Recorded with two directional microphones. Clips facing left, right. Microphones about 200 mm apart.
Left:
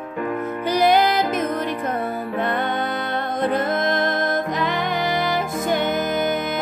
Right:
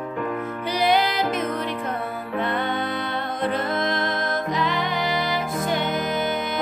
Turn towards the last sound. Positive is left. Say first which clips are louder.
# left 3 dB
turn(degrees=45)  # may be behind; listen again after turning